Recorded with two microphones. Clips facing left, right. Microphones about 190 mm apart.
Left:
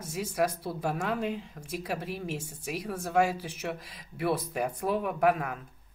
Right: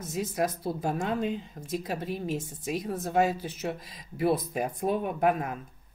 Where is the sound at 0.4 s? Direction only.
75° left (ahead or behind).